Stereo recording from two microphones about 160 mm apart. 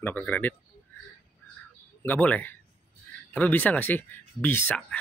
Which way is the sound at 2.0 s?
10° left (ahead or behind).